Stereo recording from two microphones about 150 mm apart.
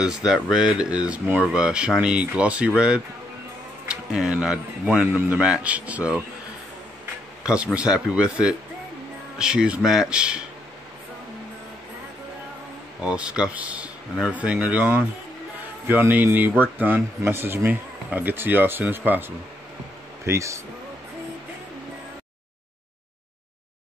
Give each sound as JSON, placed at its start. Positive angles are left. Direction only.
{"t": 0.0, "sound": "speech", "side_deg": -5}
{"t": 7.4, "sound": "speech", "side_deg": -5}
{"t": 13.0, "sound": "speech", "side_deg": -5}